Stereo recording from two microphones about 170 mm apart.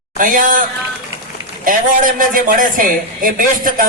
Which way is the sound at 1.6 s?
50° right (ahead or behind).